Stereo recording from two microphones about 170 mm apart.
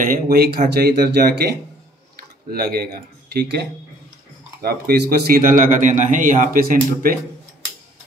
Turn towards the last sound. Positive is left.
turn(degrees=-60)  # may be behind; listen again after turning